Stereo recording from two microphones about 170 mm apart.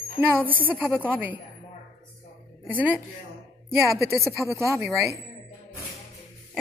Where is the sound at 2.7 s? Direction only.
10° right (ahead or behind).